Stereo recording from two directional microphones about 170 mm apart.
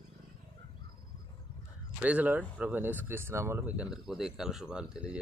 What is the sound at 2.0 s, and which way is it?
Speech, 10° right (ahead or behind).